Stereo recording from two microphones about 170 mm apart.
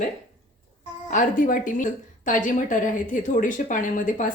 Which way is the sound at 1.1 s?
50° left (ahead or behind).